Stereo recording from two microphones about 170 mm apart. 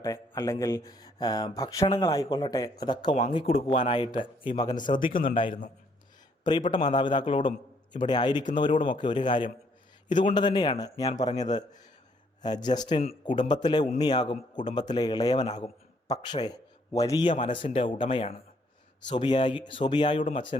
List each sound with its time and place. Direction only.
0.0 s a man's voice: 20° left (ahead or behind); by 20.7 s 35° left (ahead or behind)